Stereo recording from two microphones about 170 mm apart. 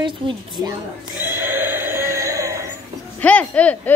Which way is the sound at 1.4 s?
10° right (ahead or behind).